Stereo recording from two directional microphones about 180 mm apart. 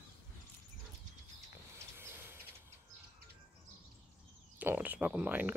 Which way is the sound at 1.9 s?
10° right (ahead or behind).